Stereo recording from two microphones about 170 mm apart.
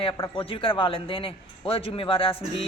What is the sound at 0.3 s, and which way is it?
A man's voice, 30° left (ahead or behind).